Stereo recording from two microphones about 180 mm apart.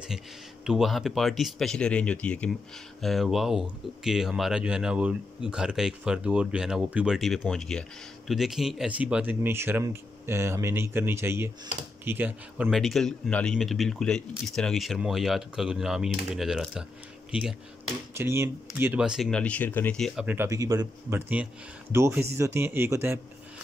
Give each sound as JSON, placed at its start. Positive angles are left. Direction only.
{"t": 0.7, "sound": "speech", "side_deg": 0}
{"t": 12.6, "sound": "speech", "side_deg": 0}
{"t": 20.2, "sound": "speech", "side_deg": -15}